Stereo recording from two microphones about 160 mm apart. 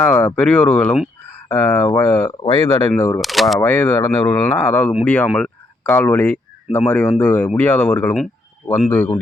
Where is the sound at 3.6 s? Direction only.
15° left (ahead or behind).